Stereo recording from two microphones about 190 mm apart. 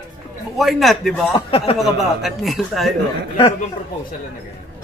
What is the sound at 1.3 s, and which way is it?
Speech, 30° left (ahead or behind).